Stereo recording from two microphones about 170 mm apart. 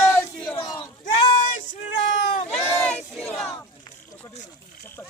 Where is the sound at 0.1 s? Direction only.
5° left (ahead or behind).